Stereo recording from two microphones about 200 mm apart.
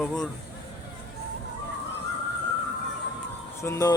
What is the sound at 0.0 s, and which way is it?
Speech, centre (ahead or behind).